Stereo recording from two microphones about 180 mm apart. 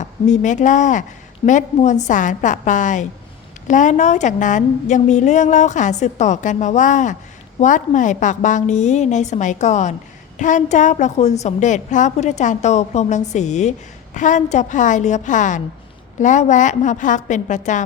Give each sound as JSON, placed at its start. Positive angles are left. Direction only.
{"t": 0.0, "sound": "a woman's voice", "side_deg": 45}